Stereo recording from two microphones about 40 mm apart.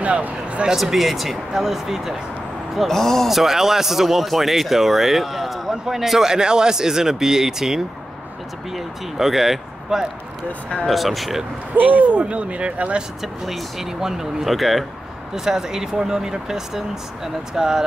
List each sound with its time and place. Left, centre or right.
0.0 s speech: right
0.7 s speech: centre
2.9 s speech: centre
3.3 s speech: centre
11.7 s speech: right
13.2 s speech: centre
14.5 s speech: centre
15.3 s speech: centre